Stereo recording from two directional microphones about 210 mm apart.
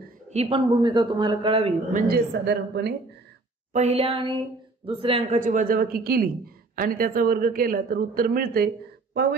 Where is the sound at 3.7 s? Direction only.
30° right (ahead or behind).